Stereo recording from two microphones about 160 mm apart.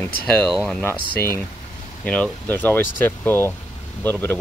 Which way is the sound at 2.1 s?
10° left (ahead or behind).